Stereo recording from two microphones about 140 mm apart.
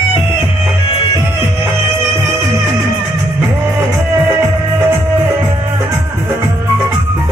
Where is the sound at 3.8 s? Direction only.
15° right (ahead or behind).